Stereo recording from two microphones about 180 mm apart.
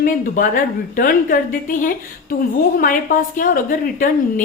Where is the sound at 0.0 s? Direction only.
50° left (ahead or behind).